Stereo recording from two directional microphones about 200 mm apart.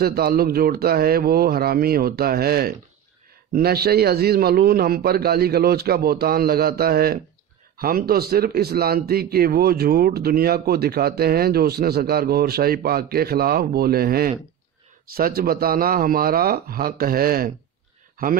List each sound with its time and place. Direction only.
0.0 s speech: 50° right (ahead or behind)